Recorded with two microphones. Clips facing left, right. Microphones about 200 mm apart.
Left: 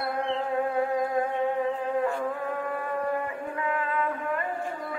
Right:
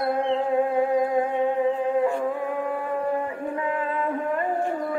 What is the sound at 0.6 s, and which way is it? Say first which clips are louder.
Music: right 4 dB; 20° right (ahead or behind).